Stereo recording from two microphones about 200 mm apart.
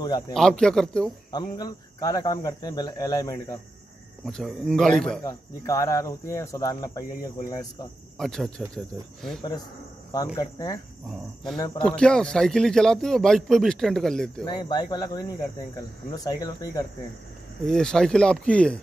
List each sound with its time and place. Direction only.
0.3 s a man's voice: 5° left (ahead or behind)
1.3 s speech: 20° left (ahead or behind)
4.2 s a man's voice: centre (ahead or behind)
5.2 s speech: 15° left (ahead or behind)
8.2 s a man's voice: 5° left (ahead or behind)
10.1 s speech: 20° left (ahead or behind)
11.8 s a man's voice: 5° left (ahead or behind)
14.4 s speech: 20° left (ahead or behind)
17.6 s a man's voice: 5° left (ahead or behind)